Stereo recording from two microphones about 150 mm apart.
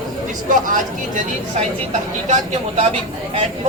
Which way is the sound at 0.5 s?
60° right (ahead or behind).